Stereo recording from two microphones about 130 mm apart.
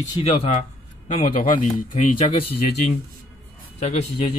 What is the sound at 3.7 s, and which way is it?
Speech, 60° left (ahead or behind).